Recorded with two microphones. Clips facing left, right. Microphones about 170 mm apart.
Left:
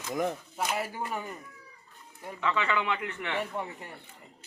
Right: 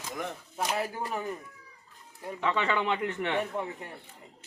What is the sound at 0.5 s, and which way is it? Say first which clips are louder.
Speech: right 1 dB; 5° left (ahead or behind).